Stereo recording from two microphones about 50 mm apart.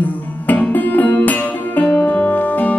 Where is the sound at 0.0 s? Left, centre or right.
Left.